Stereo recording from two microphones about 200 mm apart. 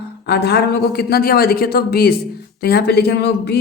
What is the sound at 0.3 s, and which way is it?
A woman's voice, 55° left (ahead or behind).